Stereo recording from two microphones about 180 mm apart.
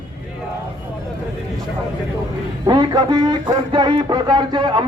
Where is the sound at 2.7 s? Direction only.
25° right (ahead or behind).